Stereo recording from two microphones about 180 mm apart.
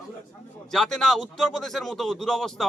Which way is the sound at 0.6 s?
5° left (ahead or behind).